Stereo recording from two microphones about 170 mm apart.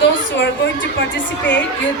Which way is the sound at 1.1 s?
90° left.